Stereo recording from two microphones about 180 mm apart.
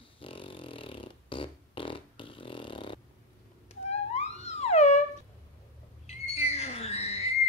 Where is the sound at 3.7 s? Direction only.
35° left (ahead or behind).